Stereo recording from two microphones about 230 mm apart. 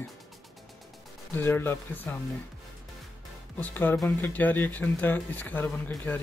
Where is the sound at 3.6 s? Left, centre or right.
Centre.